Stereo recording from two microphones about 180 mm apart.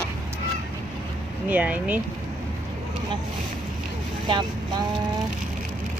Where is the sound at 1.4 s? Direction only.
10° right (ahead or behind).